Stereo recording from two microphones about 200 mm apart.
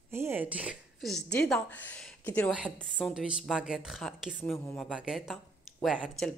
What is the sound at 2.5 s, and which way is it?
A woman's voice, 5° right (ahead or behind).